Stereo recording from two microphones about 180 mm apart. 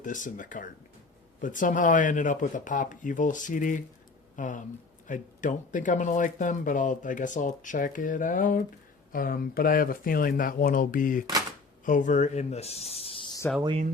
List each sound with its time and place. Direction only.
0.0 s speech: 45° left (ahead or behind); by 13.4 s 25° left (ahead or behind)